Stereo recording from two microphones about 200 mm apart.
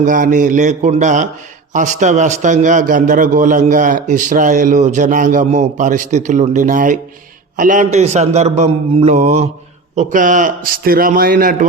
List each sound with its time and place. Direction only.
0.0 s a man's voice: 40° right (ahead or behind)